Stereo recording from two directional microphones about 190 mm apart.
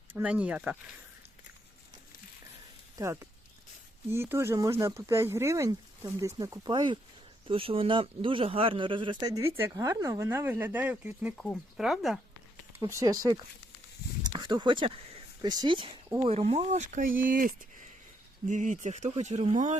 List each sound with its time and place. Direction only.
0.1 s speech: 5° right (ahead or behind)
3.0 s a man's voice: 15° right (ahead or behind)
12.8 s a man's voice: 20° right (ahead or behind)
14.3 s a sound: 25° right (ahead or behind)
16.2 s speech: 30° right (ahead or behind)